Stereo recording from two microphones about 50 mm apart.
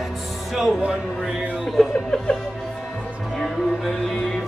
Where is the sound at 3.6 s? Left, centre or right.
Centre.